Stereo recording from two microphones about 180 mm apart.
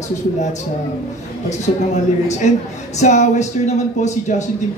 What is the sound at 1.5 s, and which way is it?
A man's voice, 40° left (ahead or behind).